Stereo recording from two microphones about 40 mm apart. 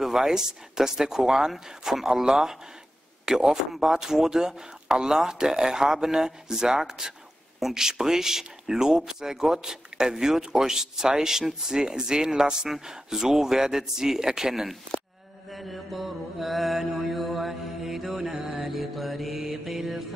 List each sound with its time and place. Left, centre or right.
0.0 s speech: centre
15.5 s mantra: centre